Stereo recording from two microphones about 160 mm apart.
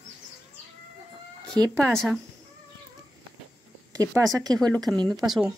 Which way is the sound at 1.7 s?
5° left (ahead or behind).